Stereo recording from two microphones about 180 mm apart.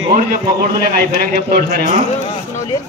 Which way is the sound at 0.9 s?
55° right (ahead or behind).